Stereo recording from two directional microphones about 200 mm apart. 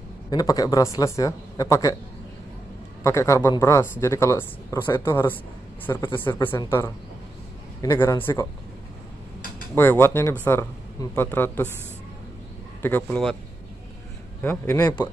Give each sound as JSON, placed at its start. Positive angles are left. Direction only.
{"t": 0.3, "sound": "speech", "side_deg": 20}
{"t": 3.0, "sound": "speech", "side_deg": 15}
{"t": 9.8, "sound": "speech", "side_deg": 10}
{"t": 12.8, "sound": "speech", "side_deg": 10}
{"t": 14.4, "sound": "speech", "side_deg": 10}